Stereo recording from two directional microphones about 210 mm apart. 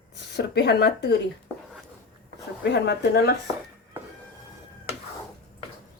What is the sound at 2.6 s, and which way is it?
Speech, 55° left (ahead or behind).